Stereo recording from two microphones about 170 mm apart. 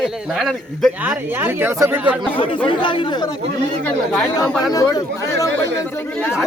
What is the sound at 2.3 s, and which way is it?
Speech, 30° left (ahead or behind).